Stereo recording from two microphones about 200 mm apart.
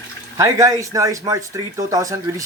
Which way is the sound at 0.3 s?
15° right (ahead or behind).